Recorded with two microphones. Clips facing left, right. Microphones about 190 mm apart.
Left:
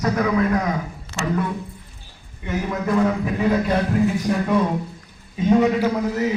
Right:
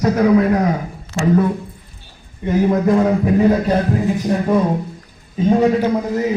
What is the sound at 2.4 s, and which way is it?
Speech, 35° right (ahead or behind).